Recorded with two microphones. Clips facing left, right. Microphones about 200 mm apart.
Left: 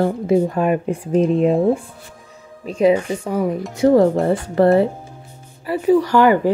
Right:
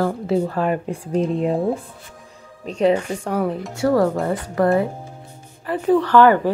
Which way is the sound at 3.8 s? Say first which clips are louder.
Left 5 dB; 20° left (ahead or behind).